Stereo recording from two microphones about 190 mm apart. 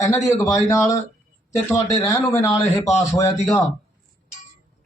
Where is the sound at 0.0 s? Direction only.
15° left (ahead or behind).